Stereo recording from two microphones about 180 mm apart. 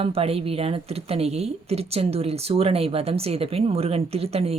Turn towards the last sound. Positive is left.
turn(degrees=-35)  # may be behind; listen again after turning